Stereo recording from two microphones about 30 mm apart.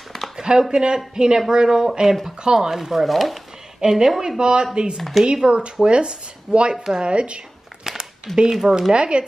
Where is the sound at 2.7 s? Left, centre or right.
Centre.